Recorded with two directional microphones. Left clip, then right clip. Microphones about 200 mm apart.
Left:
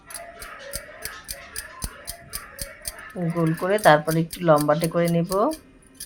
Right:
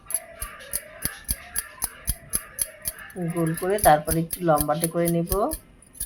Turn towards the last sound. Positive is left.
turn(degrees=15)  # may be behind; listen again after turning